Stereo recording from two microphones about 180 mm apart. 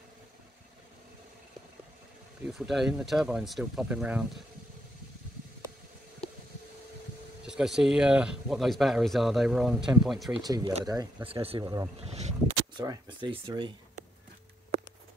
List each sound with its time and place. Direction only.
2.4 s speech: centre (ahead or behind)
7.4 s speech: 5° right (ahead or behind)
10.4 s speech: 20° right (ahead or behind)
12.0 s speech: 35° right (ahead or behind)
12.8 s speech: 20° right (ahead or behind)